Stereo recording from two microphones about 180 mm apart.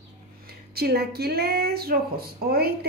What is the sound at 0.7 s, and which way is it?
Speech, 60° right (ahead or behind).